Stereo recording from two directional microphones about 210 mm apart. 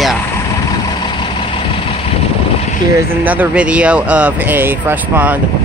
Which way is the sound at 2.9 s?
10° right (ahead or behind).